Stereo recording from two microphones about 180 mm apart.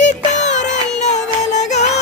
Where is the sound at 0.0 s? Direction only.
40° left (ahead or behind).